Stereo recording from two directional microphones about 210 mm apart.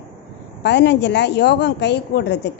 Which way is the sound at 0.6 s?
55° left (ahead or behind).